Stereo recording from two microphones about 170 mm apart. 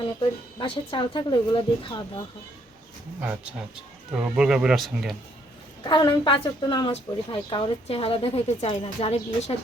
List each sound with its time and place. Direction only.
0.2 s speech: 30° left (ahead or behind)
3.2 s speech: 5° right (ahead or behind)
5.8 s a woman's voice: 25° left (ahead or behind)